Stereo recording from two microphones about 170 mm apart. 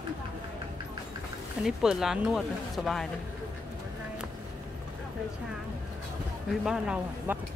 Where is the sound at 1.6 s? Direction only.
5° right (ahead or behind).